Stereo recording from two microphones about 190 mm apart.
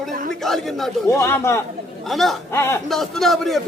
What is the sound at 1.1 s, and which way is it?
Speech, 15° left (ahead or behind).